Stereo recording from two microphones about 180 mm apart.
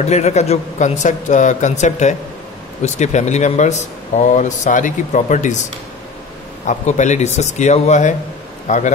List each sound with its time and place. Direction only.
0.0 s speech: 40° left (ahead or behind)
6.6 s a man's voice: 40° left (ahead or behind)